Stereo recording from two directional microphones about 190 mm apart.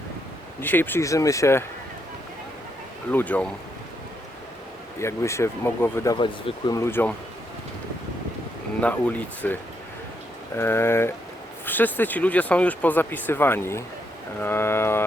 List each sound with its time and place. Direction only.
0.6 s speech: 10° left (ahead or behind)
3.1 s speech: 10° left (ahead or behind)
4.9 s speech: 15° left (ahead or behind)
6.1 s speech: 25° left (ahead or behind)
8.8 s speech: 5° left (ahead or behind)
10.6 s speech: 10° left (ahead or behind)
14.4 s mantra: 10° left (ahead or behind)